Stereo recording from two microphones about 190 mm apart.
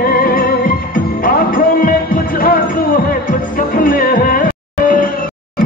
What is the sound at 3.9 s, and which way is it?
Music, 50° left (ahead or behind).